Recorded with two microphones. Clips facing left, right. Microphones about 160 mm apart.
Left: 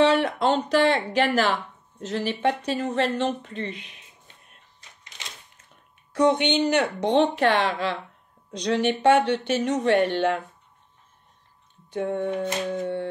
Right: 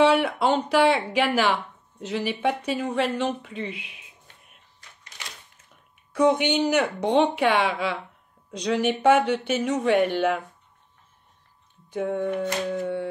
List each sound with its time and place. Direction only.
0.0 s speech: 10° right (ahead or behind)
4.7 s a sound: 20° left (ahead or behind)
6.1 s speech: 5° right (ahead or behind)
11.9 s speech: centre (ahead or behind)